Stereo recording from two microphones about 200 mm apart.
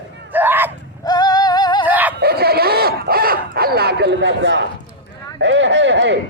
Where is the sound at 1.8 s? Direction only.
10° right (ahead or behind).